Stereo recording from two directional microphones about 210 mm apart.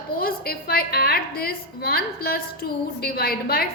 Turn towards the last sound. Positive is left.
turn(degrees=45)  # may be behind; listen again after turning